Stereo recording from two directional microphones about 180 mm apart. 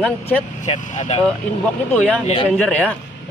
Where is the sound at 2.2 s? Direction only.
30° left (ahead or behind).